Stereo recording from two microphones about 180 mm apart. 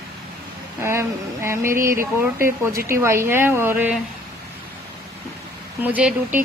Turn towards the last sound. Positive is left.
turn(degrees=-10)  # may be behind; listen again after turning